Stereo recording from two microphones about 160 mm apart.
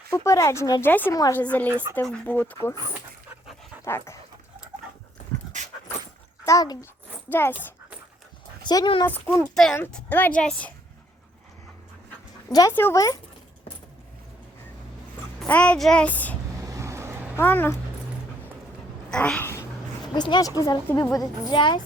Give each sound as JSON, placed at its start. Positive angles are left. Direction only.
{"t": 0.1, "sound": "speech", "side_deg": 20}
{"t": 3.8, "sound": "speech", "side_deg": 15}
{"t": 6.4, "sound": "speech", "side_deg": 20}
{"t": 8.6, "sound": "speech", "side_deg": 25}
{"t": 9.0, "sound": "speech", "side_deg": 10}
{"t": 12.5, "sound": "a woman's voice", "side_deg": 25}
{"t": 15.4, "sound": "a woman's voice", "side_deg": 10}
{"t": 16.6, "sound": "vehicle", "side_deg": -20}
{"t": 17.3, "sound": "speech", "side_deg": 10}
{"t": 19.1, "sound": "speech", "side_deg": 5}
{"t": 20.1, "sound": "a woman's voice", "side_deg": 25}